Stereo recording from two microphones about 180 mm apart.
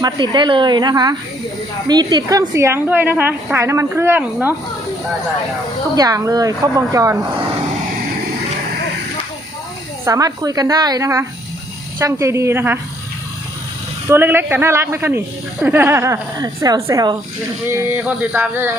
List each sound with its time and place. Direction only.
0.0 s a woman's voice: 25° right (ahead or behind); by 4.5 s 10° right (ahead or behind)
6.0 s speech: 20° right (ahead or behind)
10.1 s a woman's voice: 20° right (ahead or behind)
14.1 s a woman's voice: 10° right (ahead or behind)